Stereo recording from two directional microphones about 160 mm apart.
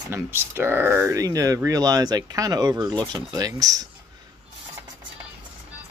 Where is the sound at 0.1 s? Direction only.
15° right (ahead or behind).